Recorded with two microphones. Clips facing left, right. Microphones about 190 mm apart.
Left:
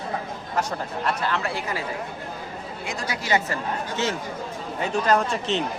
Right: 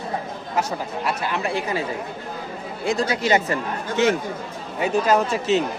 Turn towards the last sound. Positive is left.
turn(degrees=-5)  # may be behind; listen again after turning